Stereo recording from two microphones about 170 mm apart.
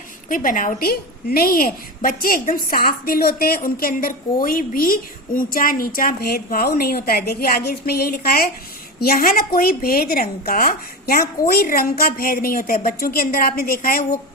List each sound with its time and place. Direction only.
0.3 s a woman's voice: 55° left (ahead or behind)